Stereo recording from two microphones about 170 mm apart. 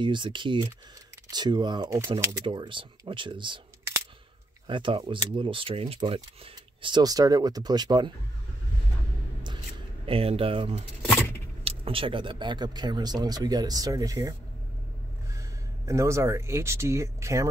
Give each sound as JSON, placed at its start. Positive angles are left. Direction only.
{"t": 0.0, "sound": "speech", "side_deg": -30}
{"t": 4.6, "sound": "speech", "side_deg": -30}
{"t": 10.0, "sound": "speech", "side_deg": -35}
{"t": 11.1, "sound": "vehicle", "side_deg": 15}
{"t": 11.6, "sound": "speech", "side_deg": -35}
{"t": 15.3, "sound": "speech", "side_deg": -20}